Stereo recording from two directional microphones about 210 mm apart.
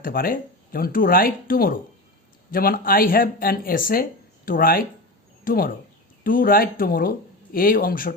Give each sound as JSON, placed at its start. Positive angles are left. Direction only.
{"t": 0.0, "sound": "speech", "side_deg": 45}